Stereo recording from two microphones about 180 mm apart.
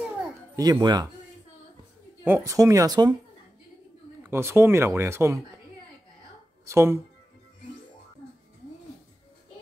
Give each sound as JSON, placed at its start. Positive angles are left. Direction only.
{"t": 0.6, "sound": "speech", "side_deg": -20}
{"t": 2.2, "sound": "speech", "side_deg": -15}
{"t": 4.2, "sound": "speech", "side_deg": -15}
{"t": 6.6, "sound": "speech", "side_deg": -15}